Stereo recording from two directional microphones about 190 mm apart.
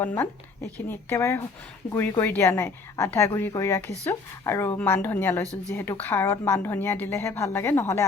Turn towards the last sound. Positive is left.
turn(degrees=10)  # may be behind; listen again after turning